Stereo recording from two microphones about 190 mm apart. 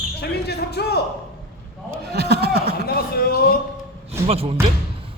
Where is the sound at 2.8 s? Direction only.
55° left (ahead or behind).